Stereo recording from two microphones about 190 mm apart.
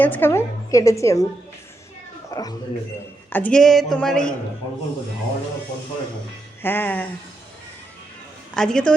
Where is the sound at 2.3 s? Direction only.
20° left (ahead or behind).